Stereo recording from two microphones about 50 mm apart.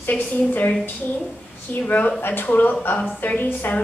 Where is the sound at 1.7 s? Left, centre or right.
Left.